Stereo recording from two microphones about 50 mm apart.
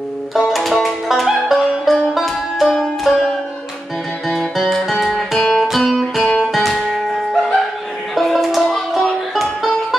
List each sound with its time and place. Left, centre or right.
0.3 s music: centre
4.3 s music: centre
6.2 s music: centre
6.5 s music: centre